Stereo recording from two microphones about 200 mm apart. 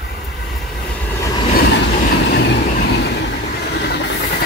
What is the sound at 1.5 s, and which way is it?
Train, 50° left (ahead or behind).